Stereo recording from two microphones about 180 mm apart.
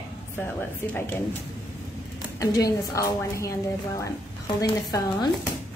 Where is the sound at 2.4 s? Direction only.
20° left (ahead or behind).